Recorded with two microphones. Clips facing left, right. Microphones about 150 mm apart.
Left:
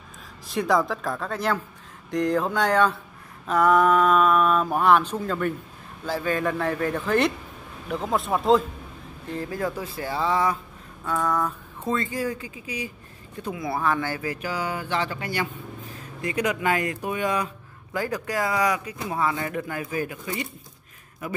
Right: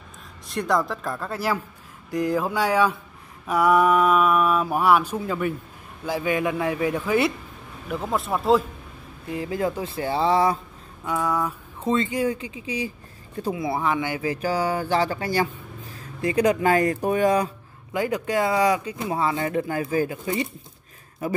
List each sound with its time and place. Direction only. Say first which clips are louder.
0.5 s speech: left 1 dB; centre (ahead or behind)
2.0 s mantra: even; 5° right (ahead or behind)
7.9 s speech: left 1 dB; centre (ahead or behind)
9.3 s speech: right 3 dB; 15° right (ahead or behind)
11.1 s speech: even; 10° right (ahead or behind)
11.9 s speech: right 4 dB; 20° right (ahead or behind)
14.4 s speech: right 5 dB; 35° right (ahead or behind)
17.9 s speech: right 4 dB; 20° right (ahead or behind)